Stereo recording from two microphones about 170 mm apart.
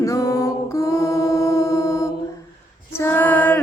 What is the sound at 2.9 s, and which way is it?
Female singing, 15° left (ahead or behind).